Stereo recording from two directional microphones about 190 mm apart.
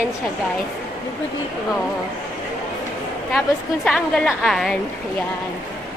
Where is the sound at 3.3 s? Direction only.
5° left (ahead or behind).